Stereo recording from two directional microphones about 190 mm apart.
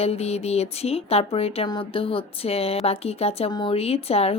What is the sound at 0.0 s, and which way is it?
Speech, 35° left (ahead or behind).